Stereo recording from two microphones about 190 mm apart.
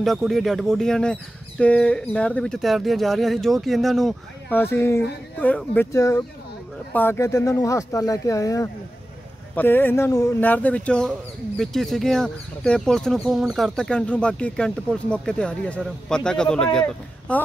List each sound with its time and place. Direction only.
0.0 s speech: centre (ahead or behind)